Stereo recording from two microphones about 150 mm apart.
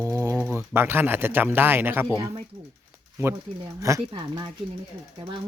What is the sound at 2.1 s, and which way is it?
Speech, 30° right (ahead or behind).